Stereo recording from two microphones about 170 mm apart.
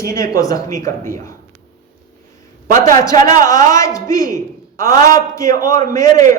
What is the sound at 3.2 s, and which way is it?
Speech, 50° right (ahead or behind).